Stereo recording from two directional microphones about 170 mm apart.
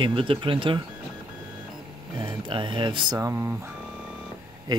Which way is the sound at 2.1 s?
25° right (ahead or behind).